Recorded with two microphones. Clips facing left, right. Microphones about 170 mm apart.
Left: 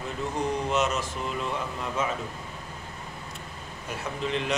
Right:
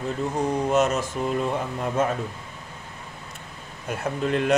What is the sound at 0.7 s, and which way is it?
Speech, 45° right (ahead or behind).